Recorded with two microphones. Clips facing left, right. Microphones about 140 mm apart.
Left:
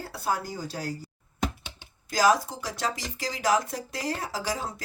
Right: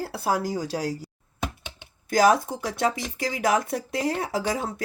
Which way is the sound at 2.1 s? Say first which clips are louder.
Right 3 dB; 55° right (ahead or behind).